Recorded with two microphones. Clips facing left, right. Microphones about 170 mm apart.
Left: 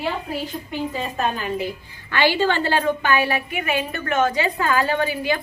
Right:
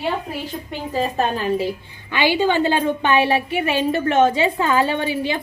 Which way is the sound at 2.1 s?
15° right (ahead or behind).